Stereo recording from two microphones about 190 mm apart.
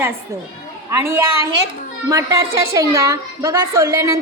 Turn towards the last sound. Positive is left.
turn(degrees=-15)  # may be behind; listen again after turning